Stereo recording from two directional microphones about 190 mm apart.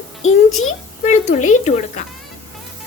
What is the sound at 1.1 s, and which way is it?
Speech, 40° left (ahead or behind).